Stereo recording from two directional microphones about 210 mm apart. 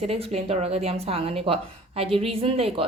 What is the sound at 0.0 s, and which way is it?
Speech, 30° right (ahead or behind).